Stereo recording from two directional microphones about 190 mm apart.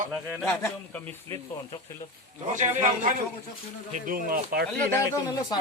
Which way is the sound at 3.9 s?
50° right (ahead or behind).